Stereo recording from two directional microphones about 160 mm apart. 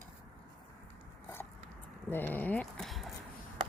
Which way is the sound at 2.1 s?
10° left (ahead or behind).